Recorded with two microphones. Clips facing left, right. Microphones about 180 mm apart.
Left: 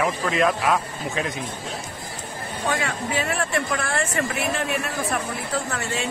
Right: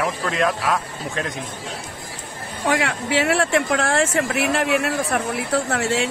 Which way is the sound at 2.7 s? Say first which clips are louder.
Right 6 dB; 80° right.